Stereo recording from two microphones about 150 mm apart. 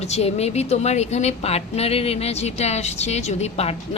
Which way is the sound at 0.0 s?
45° left (ahead or behind).